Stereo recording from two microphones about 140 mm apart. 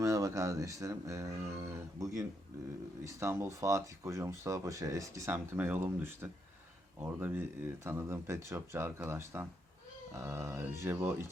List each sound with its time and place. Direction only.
0.0 s speech: 25° right (ahead or behind)